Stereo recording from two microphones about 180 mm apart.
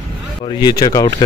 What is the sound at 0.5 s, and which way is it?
Speech, 20° left (ahead or behind).